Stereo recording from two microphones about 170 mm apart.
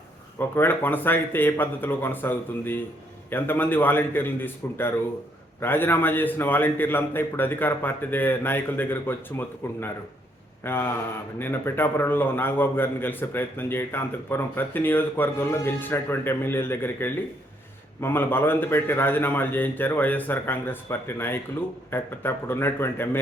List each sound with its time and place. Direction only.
0.3 s a man's voice: 10° left (ahead or behind)